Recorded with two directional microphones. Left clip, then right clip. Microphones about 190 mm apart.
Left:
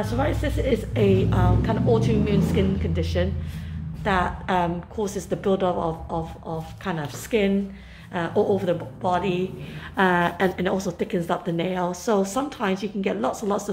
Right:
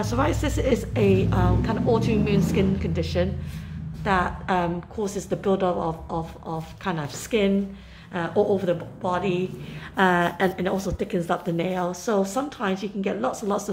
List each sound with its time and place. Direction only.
0.0 s speech: 25° right (ahead or behind)
0.9 s a woman's voice: 10° right (ahead or behind)